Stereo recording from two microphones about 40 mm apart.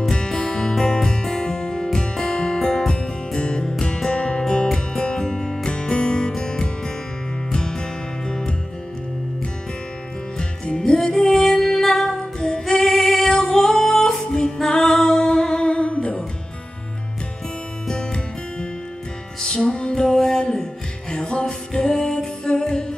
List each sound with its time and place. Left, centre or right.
0.1 s music: centre
11.1 s music: centre
12.4 s female singing: centre
12.7 s music: centre; by 16.3 s left
17.8 s music: left
20.1 s music: centre
21.1 s music: left
21.9 s music: centre
22.4 s music: centre